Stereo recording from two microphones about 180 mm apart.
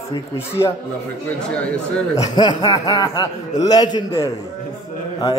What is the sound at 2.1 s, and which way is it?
Speech, 25° left (ahead or behind).